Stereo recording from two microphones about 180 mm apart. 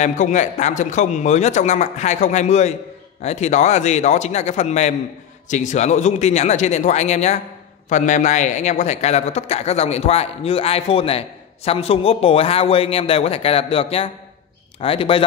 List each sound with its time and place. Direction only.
0.0 s a man's voice: 40° left (ahead or behind)